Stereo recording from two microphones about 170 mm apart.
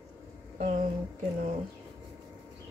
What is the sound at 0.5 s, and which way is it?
Speech, 45° right (ahead or behind).